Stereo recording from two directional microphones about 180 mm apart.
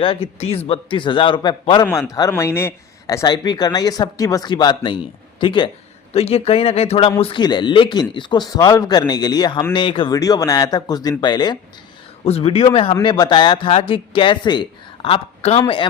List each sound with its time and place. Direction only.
0.0 s speech: 30° left (ahead or behind)